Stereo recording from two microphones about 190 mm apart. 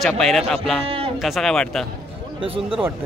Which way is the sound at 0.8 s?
30° right (ahead or behind).